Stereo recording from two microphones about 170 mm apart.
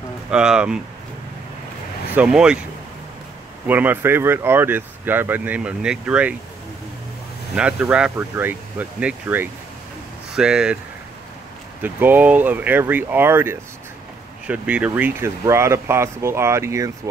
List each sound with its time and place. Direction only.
0.3 s speech: 5° right (ahead or behind)
2.1 s speech: 5° right (ahead or behind)
3.6 s speech: 10° right (ahead or behind)
7.5 s speech: 5° right (ahead or behind)
11.8 s speech: 10° right (ahead or behind)